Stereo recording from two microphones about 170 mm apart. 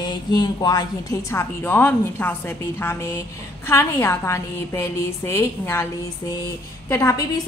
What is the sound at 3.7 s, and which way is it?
A woman's voice, 15° left (ahead or behind).